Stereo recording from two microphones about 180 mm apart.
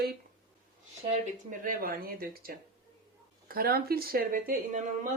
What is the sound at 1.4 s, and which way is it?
Speech, 50° right (ahead or behind).